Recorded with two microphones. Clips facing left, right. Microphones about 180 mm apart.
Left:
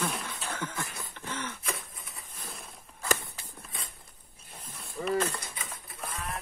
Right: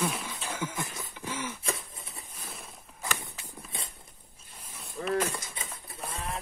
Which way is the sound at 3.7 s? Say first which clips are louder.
Right 2 dB; 25° right (ahead or behind).